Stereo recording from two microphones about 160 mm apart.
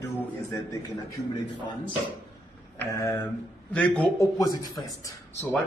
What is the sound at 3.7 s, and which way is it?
Speech, 10° left (ahead or behind).